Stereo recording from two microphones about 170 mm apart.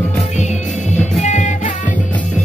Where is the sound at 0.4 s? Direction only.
45° left (ahead or behind).